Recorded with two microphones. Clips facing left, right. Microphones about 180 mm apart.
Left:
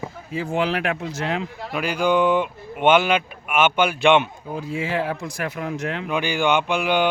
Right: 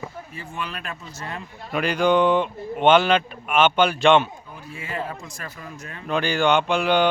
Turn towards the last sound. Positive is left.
turn(degrees=10)  # may be behind; listen again after turning